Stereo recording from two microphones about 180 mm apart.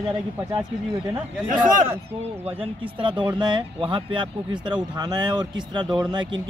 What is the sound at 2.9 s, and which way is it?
Speech, 25° right (ahead or behind).